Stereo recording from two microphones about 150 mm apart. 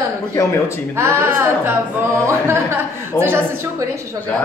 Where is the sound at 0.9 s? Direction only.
15° right (ahead or behind).